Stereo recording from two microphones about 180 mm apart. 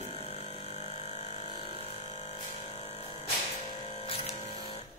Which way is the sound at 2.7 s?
35° left (ahead or behind).